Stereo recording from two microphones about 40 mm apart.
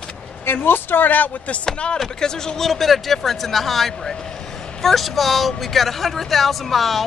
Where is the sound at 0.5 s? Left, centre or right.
Left.